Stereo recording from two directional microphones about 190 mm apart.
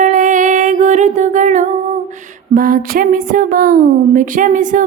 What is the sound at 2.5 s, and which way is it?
Speech, 45° right (ahead or behind).